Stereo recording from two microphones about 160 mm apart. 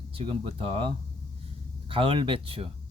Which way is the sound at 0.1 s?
40° right (ahead or behind).